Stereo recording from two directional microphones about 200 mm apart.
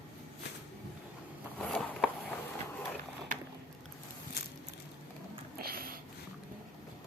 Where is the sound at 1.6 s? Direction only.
5° left (ahead or behind).